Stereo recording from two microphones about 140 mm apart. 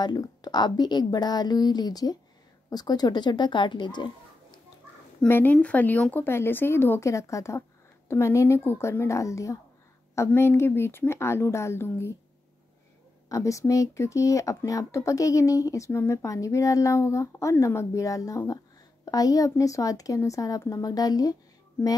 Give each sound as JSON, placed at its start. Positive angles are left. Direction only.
{"t": 0.0, "sound": "speech", "side_deg": 30}
{"t": 5.3, "sound": "speech", "side_deg": 10}
{"t": 13.3, "sound": "speech", "side_deg": 20}